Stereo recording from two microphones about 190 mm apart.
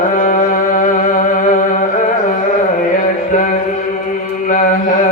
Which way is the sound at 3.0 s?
40° left (ahead or behind).